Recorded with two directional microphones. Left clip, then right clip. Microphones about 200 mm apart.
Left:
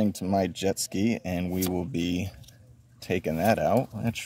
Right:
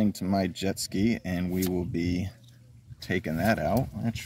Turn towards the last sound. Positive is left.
turn(degrees=20)  # may be behind; listen again after turning